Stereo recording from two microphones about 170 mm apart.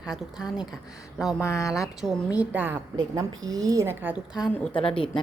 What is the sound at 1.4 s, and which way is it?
Speech, 15° left (ahead or behind).